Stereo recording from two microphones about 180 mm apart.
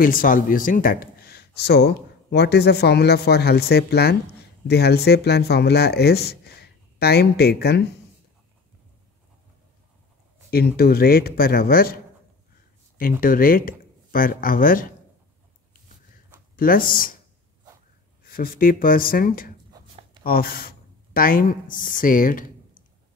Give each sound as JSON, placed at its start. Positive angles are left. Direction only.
{"t": 0.0, "sound": "speech", "side_deg": 50}
{"t": 10.5, "sound": "speech", "side_deg": 60}
{"t": 13.0, "sound": "speech", "side_deg": 50}
{"t": 16.5, "sound": "speech", "side_deg": 55}
{"t": 18.3, "sound": "speech", "side_deg": 55}
{"t": 19.7, "sound": "writing", "side_deg": -25}
{"t": 20.2, "sound": "speech", "side_deg": 55}